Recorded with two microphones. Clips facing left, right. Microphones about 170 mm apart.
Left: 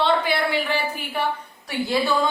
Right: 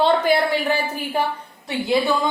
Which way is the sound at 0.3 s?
45° right (ahead or behind).